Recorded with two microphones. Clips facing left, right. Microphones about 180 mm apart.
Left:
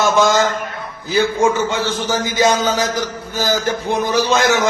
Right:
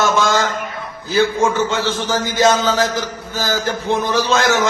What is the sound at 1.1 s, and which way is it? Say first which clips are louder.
A man's voice: even; 15° left (ahead or behind).